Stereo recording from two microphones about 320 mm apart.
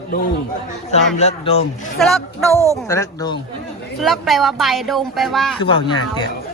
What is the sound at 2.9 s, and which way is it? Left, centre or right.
Speech, centre.